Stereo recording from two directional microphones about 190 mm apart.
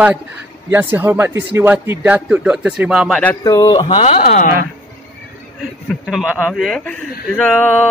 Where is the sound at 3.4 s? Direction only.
20° left (ahead or behind).